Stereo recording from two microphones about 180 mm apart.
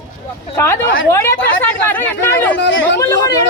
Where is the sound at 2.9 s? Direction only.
15° left (ahead or behind).